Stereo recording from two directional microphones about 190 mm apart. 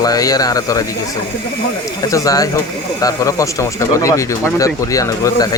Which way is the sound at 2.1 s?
20° left (ahead or behind).